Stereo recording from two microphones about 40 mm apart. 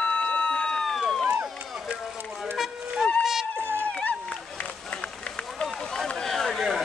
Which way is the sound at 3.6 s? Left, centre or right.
Right.